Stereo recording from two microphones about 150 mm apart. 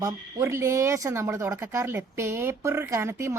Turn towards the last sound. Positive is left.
turn(degrees=-20)  # may be behind; listen again after turning